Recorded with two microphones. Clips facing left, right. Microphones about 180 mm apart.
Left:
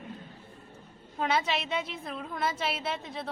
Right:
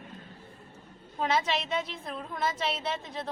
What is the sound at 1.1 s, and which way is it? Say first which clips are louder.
A woman's voice: even; centre (ahead or behind).